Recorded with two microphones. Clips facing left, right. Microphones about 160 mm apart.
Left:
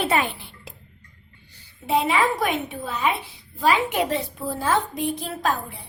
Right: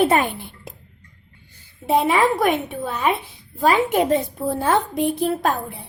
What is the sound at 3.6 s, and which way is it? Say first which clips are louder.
Speech: right 4 dB; 45° right (ahead or behind).